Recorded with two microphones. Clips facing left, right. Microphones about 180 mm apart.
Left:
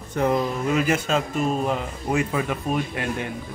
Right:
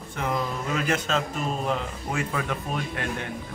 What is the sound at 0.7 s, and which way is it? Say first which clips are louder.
A man's voice: left 3 dB; 10° left (ahead or behind).